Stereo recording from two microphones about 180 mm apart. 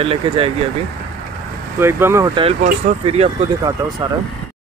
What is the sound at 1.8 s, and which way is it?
Speech, 15° right (ahead or behind).